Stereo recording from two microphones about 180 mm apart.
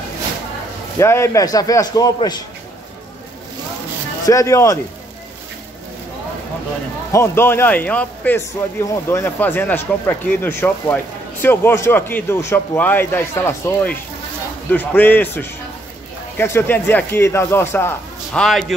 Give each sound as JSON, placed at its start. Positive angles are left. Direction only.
{"t": 0.9, "sound": "a man's voice", "side_deg": 15}
{"t": 4.3, "sound": "a man's voice", "side_deg": 15}
{"t": 7.1, "sound": "a man's voice", "side_deg": 15}